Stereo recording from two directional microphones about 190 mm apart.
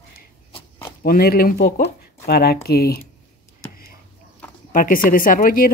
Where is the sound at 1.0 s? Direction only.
55° left (ahead or behind).